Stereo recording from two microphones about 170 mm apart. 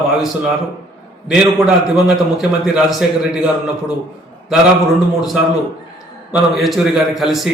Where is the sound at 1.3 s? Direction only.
Centre (ahead or behind).